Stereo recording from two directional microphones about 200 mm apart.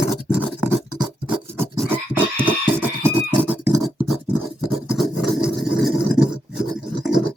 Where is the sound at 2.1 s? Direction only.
10° right (ahead or behind).